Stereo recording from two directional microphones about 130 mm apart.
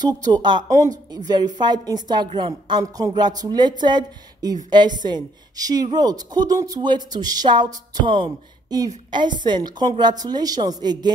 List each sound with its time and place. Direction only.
0.0 s speech: 30° right (ahead or behind)